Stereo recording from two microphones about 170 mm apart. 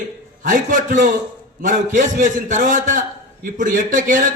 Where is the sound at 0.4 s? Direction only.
50° right (ahead or behind).